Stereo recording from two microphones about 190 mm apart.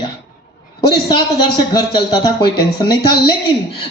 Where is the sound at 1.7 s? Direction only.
20° left (ahead or behind).